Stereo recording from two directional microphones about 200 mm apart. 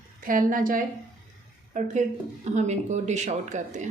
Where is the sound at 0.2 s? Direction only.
45° right (ahead or behind).